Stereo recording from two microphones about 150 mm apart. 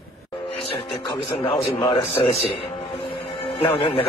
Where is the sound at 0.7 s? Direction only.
40° left (ahead or behind).